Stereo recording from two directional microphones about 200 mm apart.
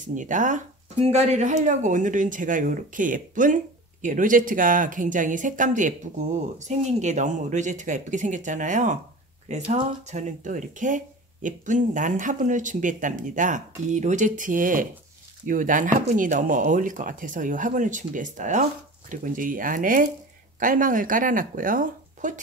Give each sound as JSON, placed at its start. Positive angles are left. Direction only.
{"t": 0.0, "sound": "speech", "side_deg": -40}